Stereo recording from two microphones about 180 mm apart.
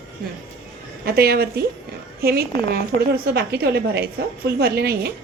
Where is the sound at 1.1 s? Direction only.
60° right (ahead or behind).